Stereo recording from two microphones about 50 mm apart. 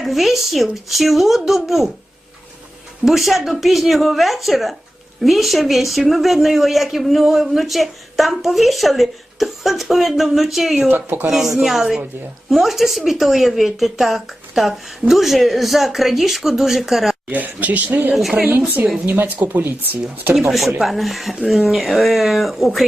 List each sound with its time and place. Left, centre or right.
0.0 s speech: centre
3.0 s speech: centre
10.8 s speech: right
11.3 s speech: centre
17.3 s speech: right
18.1 s speech: centre
18.6 s speech: right
19.0 s speech: right
20.3 s speech: centre